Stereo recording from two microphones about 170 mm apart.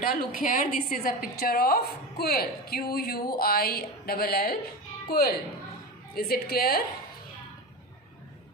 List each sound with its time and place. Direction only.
0.0 s a woman's voice: 60° left (ahead or behind)